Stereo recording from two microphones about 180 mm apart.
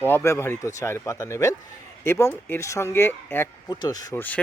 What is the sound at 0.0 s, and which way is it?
Speech, 10° left (ahead or behind).